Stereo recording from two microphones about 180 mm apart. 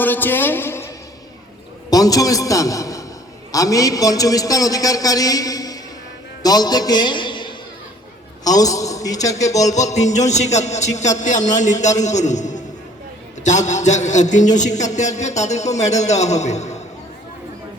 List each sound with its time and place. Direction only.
0.0 s a man's voice: 10° left (ahead or behind)
9.7 s a man's voice: 40° left (ahead or behind)